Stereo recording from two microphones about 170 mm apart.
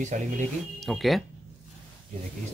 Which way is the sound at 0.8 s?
Centre (ahead or behind).